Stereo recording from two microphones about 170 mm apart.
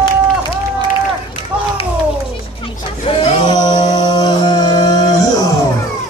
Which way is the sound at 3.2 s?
25° left (ahead or behind).